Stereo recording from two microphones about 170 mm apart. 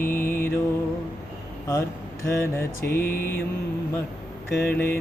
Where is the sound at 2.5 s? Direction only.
15° left (ahead or behind).